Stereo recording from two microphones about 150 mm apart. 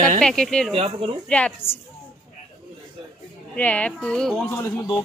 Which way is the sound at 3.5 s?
10° left (ahead or behind).